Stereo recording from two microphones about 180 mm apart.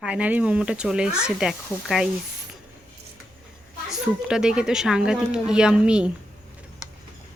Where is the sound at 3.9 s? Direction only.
5° right (ahead or behind).